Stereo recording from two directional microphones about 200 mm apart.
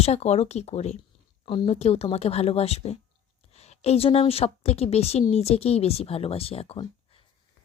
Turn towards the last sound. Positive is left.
turn(degrees=30)  # may be behind; listen again after turning